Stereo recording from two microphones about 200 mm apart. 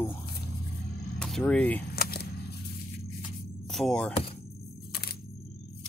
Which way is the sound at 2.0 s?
50° left (ahead or behind).